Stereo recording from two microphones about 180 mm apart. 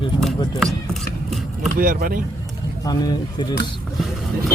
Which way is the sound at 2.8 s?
25° left (ahead or behind).